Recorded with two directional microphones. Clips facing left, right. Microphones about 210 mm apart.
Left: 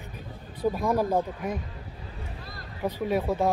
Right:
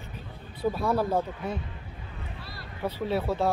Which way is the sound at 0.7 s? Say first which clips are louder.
Left 1 dB; 15° left (ahead or behind).